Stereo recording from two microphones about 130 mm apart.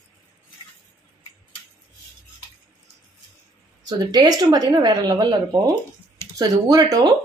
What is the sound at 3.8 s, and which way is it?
A woman's voice, 30° right (ahead or behind).